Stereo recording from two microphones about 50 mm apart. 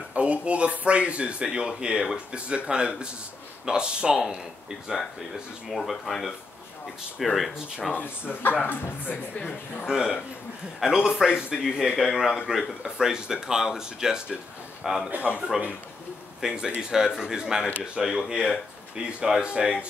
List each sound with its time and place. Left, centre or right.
0.1 s speech: right
5.8 s speech: centre
7.9 s speech: left
9.8 s speech: centre
15.0 s speech: right
16.3 s speech: centre